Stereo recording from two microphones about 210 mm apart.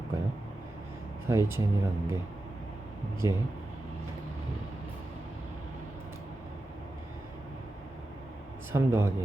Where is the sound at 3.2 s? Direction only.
15° right (ahead or behind).